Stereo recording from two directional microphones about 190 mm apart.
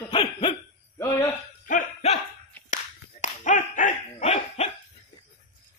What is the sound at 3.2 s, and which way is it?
Dog, 40° left (ahead or behind).